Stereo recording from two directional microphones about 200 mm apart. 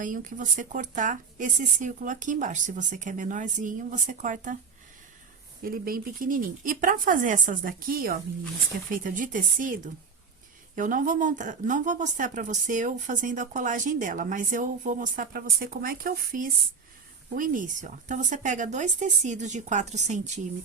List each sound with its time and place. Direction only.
0.0 s a woman's voice: 40° right (ahead or behind)
5.6 s a woman's voice: 45° right (ahead or behind)